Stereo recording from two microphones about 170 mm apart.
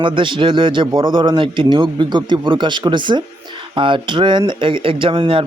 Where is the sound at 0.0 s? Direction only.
30° right (ahead or behind).